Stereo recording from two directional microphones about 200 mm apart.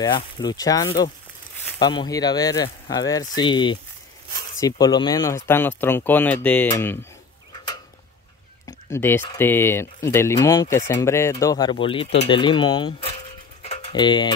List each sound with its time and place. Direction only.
0.0 s speech: 20° left (ahead or behind)
8.9 s speech: 10° left (ahead or behind)
13.6 s tick-tock: 30° left (ahead or behind)